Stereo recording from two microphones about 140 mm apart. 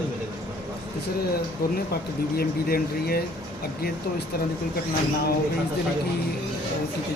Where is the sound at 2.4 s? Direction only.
90° left.